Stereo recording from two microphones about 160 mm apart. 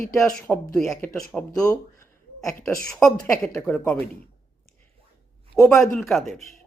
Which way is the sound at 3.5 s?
15° left (ahead or behind).